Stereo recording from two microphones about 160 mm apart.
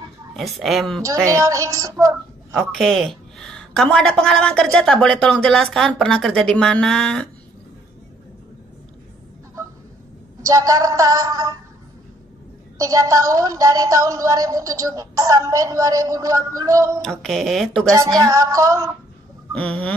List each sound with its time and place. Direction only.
0.4 s a woman's voice: centre (ahead or behind)
1.0 s speech: 20° right (ahead or behind)
2.5 s a woman's voice: 5° left (ahead or behind)
10.4 s speech: 20° right (ahead or behind)
12.7 s speech: 20° right (ahead or behind)
17.0 s a woman's voice: 5° left (ahead or behind)
17.9 s speech: 20° right (ahead or behind)